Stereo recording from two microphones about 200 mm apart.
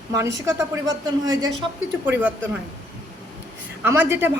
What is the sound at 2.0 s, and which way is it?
Speech, 10° right (ahead or behind).